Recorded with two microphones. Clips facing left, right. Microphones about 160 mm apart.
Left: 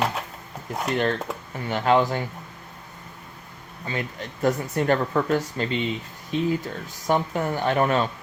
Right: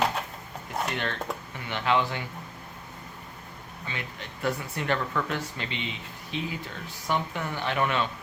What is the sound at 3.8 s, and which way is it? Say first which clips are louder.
Speech: left 8 dB; 40° left (ahead or behind).